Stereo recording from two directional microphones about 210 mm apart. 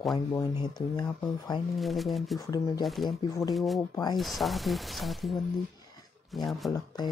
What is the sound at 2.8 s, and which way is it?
Speech, centre (ahead or behind).